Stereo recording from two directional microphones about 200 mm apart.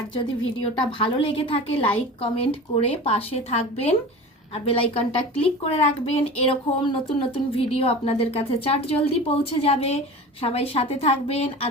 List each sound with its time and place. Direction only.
0.9 s a woman's voice: 25° left (ahead or behind)